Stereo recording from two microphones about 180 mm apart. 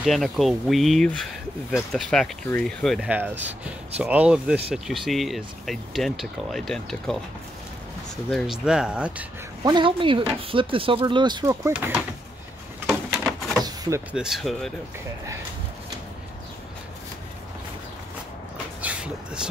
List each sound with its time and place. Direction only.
0.0 s speech: centre (ahead or behind)
8.3 s speech: centre (ahead or behind)
9.7 s speech: 25° right (ahead or behind); by 12.0 s 10° right (ahead or behind)
13.1 s a sound: 5° right (ahead or behind)
13.7 s power windows: 15° right (ahead or behind)
14.1 s speech: centre (ahead or behind)
18.8 s a sound: 5° right (ahead or behind)